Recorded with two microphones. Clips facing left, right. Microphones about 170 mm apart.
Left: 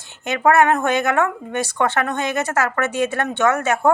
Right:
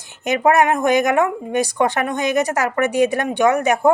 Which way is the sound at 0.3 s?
20° right (ahead or behind).